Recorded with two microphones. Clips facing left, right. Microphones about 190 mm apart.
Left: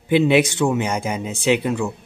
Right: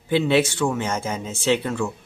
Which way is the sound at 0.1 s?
15° left (ahead or behind).